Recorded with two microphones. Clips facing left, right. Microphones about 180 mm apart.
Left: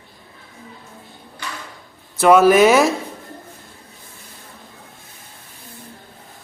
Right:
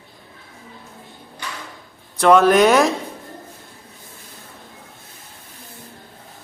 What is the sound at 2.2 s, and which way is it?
Speech, 5° left (ahead or behind).